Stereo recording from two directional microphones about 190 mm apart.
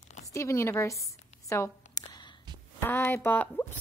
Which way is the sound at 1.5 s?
20° left (ahead or behind).